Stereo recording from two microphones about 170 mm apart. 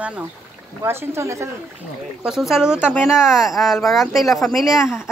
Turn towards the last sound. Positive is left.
turn(degrees=-5)  # may be behind; listen again after turning